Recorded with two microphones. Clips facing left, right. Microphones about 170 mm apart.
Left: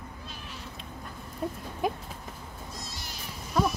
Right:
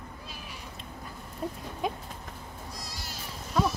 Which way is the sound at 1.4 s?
Centre (ahead or behind).